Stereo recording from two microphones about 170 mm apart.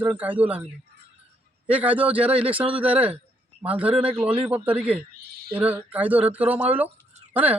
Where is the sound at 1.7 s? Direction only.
10° right (ahead or behind).